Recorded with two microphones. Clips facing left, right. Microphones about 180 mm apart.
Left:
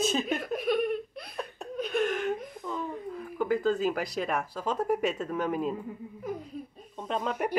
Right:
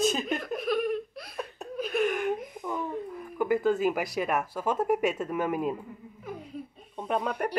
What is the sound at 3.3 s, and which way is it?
Speech, 10° right (ahead or behind).